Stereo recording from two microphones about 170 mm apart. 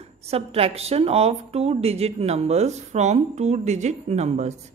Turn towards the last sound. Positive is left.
turn(degrees=-40)  # may be behind; listen again after turning